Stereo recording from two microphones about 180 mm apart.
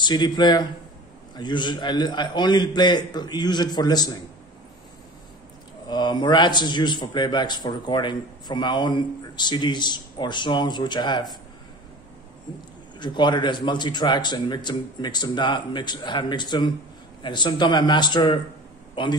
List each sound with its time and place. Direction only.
0.0 s a man's voice: 25° left (ahead or behind)
5.9 s a man's voice: 25° left (ahead or behind)
13.0 s a man's voice: 25° left (ahead or behind)